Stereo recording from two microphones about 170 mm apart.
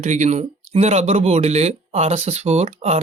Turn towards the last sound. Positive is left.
turn(degrees=-40)  # may be behind; listen again after turning